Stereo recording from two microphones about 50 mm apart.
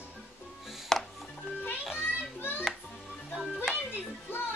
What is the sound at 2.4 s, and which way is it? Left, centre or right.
Music, left.